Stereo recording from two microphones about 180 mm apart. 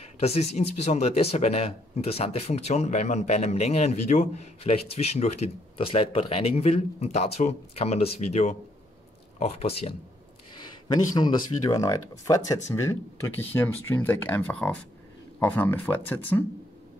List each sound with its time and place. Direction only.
0.2 s speech: 35° left (ahead or behind)
10.9 s speech: 25° left (ahead or behind)